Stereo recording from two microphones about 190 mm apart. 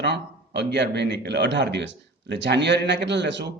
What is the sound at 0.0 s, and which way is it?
A man's voice, 65° right (ahead or behind).